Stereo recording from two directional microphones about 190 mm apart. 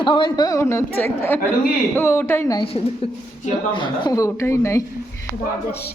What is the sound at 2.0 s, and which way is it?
Speech, 15° left (ahead or behind).